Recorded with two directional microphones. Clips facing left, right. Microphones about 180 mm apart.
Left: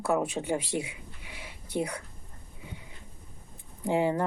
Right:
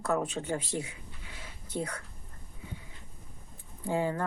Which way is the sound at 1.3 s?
15° left (ahead or behind).